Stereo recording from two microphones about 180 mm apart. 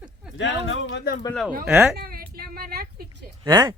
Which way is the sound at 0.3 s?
90° left.